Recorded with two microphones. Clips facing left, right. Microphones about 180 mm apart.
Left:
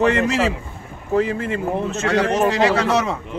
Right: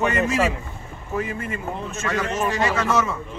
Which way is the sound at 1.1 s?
90° left.